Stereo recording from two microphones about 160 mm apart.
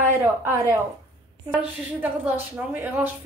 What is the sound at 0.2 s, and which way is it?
A woman's voice, 15° right (ahead or behind).